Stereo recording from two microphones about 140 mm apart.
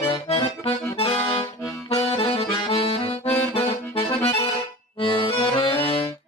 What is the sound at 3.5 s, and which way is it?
Accordion, 45° left (ahead or behind).